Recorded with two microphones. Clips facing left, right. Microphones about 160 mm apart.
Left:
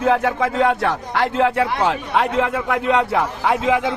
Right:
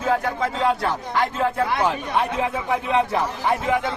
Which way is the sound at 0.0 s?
70° left (ahead or behind).